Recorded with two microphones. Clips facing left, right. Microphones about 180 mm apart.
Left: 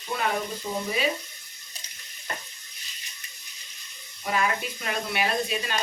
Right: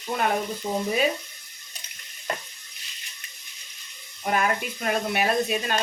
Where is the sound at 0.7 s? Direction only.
40° right (ahead or behind).